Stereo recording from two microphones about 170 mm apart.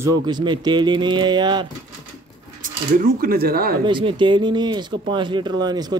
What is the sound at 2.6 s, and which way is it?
Speech, 55° right (ahead or behind).